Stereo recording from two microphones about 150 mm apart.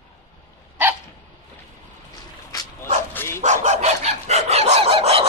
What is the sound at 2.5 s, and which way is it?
Dog, 25° left (ahead or behind).